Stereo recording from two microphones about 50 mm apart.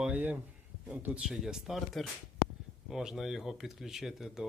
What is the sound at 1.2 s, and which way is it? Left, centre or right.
Speech, centre.